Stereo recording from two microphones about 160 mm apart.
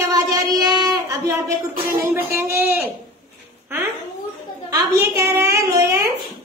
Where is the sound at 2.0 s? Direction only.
15° right (ahead or behind).